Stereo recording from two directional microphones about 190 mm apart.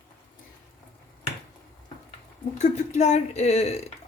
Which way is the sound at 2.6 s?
35° left (ahead or behind).